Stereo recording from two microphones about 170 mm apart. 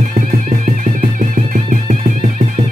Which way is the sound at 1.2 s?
50° right (ahead or behind).